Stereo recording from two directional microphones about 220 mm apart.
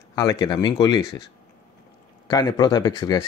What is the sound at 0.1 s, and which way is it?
Speech, 15° left (ahead or behind).